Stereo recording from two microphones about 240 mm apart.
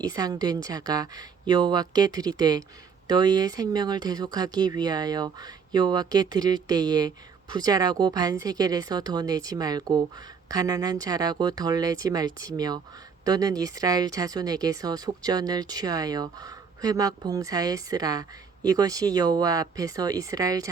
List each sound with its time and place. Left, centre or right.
0.0 s speech: centre